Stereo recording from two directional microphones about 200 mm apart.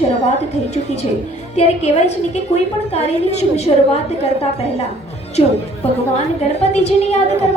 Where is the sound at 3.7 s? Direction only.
25° left (ahead or behind).